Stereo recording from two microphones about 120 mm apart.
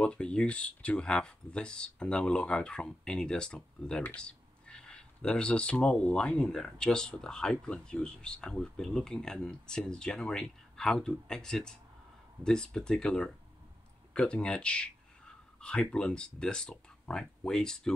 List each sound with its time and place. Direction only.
0.0 s speech: 10° left (ahead or behind)